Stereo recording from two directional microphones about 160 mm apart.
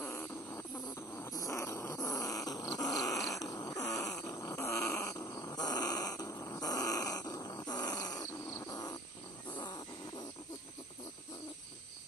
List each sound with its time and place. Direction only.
0.0 s snoring: 15° left (ahead or behind)
1.1 s cat: 20° left (ahead or behind)
3.3 s a sound: 20° left (ahead or behind)
9.6 s snoring: 30° left (ahead or behind)